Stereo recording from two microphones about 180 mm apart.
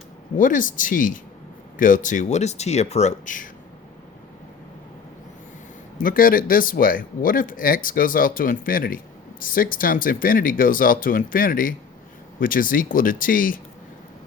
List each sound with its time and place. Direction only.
0.3 s speech: 45° left (ahead or behind)
6.0 s speech: 50° left (ahead or behind)